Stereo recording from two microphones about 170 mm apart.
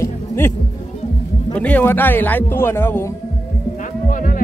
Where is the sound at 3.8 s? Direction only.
50° left (ahead or behind).